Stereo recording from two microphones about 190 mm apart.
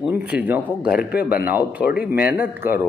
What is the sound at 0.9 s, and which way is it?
Speech, 50° left (ahead or behind).